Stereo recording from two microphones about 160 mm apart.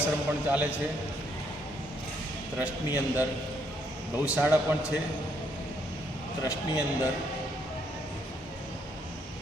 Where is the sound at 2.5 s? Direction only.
10° right (ahead or behind).